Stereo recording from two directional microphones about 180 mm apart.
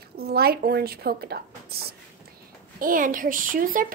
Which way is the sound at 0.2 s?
60° right (ahead or behind).